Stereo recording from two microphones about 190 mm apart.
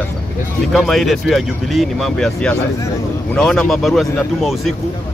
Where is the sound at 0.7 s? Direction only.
Centre (ahead or behind).